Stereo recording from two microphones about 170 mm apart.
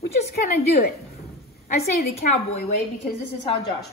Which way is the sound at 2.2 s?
40° left (ahead or behind).